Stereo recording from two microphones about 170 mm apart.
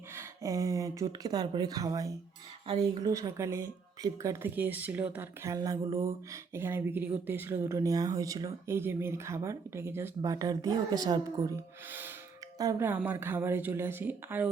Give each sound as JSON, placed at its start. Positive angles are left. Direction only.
{"t": 0.2, "sound": "speech", "side_deg": -20}